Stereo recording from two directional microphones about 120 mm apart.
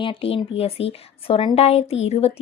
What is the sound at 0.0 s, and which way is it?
A woman's voice, 50° left (ahead or behind).